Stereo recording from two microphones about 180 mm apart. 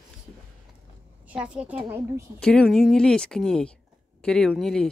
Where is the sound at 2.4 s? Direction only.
5° left (ahead or behind).